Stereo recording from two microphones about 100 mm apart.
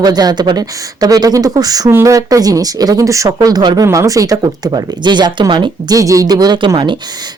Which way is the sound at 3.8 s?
30° right (ahead or behind).